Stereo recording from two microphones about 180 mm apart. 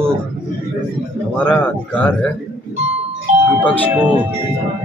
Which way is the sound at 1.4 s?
5° left (ahead or behind).